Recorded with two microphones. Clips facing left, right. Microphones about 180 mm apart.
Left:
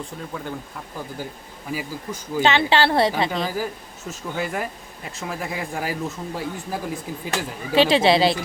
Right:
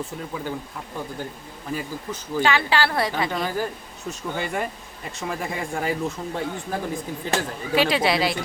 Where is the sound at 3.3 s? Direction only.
5° left (ahead or behind).